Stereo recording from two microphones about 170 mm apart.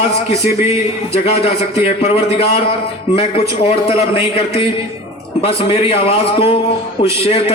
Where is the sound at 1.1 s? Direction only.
35° left (ahead or behind).